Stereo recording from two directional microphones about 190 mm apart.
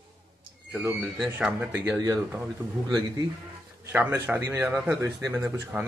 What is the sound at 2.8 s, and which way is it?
Speech, 20° right (ahead or behind).